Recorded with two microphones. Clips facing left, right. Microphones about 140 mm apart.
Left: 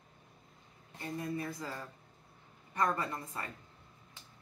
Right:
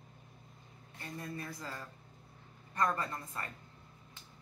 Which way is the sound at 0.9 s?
15° left (ahead or behind).